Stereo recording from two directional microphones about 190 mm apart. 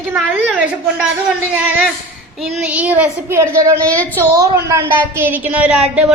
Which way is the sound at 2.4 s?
Centre (ahead or behind).